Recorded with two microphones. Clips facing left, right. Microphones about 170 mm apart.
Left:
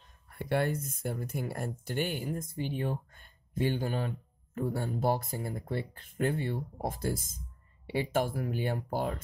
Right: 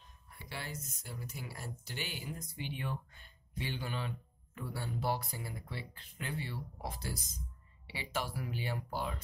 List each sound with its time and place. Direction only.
0.3 s speech: 55° left (ahead or behind)